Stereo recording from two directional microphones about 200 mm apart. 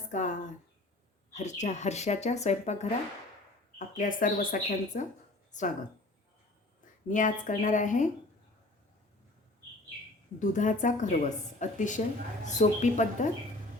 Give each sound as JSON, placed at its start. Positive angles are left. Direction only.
{"t": 0.1, "sound": "speech", "side_deg": 40}
{"t": 7.1, "sound": "speech", "side_deg": 40}
{"t": 10.4, "sound": "speech", "side_deg": 40}